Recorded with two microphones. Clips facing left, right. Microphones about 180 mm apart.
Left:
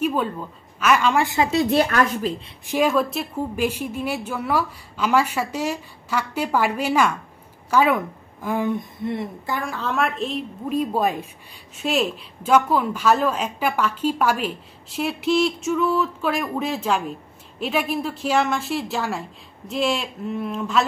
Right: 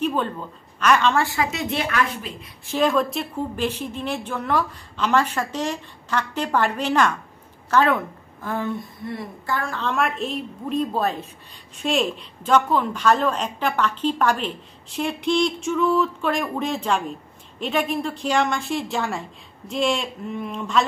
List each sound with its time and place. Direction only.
0.0 s a sound: 10° left (ahead or behind)
0.7 s a woman's voice: 5° left (ahead or behind)
1.5 s a woman's voice: 35° left (ahead or behind)
2.6 s a woman's voice: 15° left (ahead or behind)
2.9 s a woman's voice: 5° left (ahead or behind); by 9.6 s 20° left (ahead or behind)
9.6 s a woman's voice: 10° left (ahead or behind)